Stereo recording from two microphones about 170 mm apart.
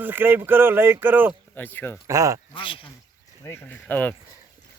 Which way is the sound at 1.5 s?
10° left (ahead or behind).